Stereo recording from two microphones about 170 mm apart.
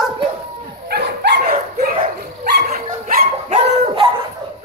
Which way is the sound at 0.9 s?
75° right (ahead or behind).